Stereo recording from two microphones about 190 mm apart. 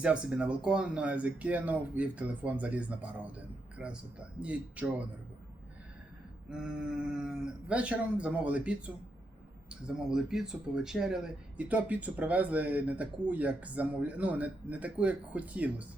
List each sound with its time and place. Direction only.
0.0 s speech: 5° right (ahead or behind)
6.5 s speech: 5° right (ahead or behind)